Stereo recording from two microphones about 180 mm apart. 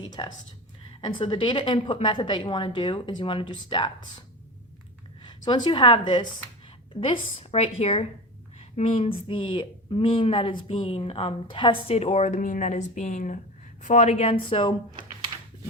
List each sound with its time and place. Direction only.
0.0 s a woman's voice: 25° left (ahead or behind)
5.2 s a woman's voice: 25° left (ahead or behind)